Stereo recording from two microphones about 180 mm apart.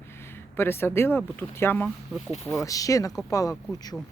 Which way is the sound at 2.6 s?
20° left (ahead or behind).